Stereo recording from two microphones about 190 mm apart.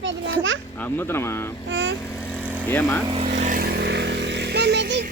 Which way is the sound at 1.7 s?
70° right (ahead or behind).